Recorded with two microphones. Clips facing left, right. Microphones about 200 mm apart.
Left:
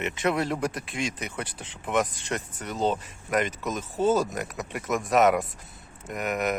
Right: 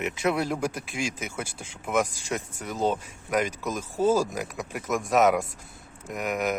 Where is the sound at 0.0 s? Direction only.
Centre (ahead or behind).